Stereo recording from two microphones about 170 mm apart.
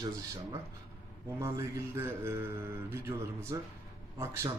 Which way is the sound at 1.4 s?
15° right (ahead or behind).